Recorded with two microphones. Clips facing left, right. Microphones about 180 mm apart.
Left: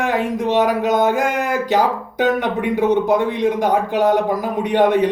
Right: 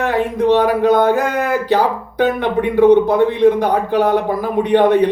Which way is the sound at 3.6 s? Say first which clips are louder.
Right 2 dB; 15° left (ahead or behind).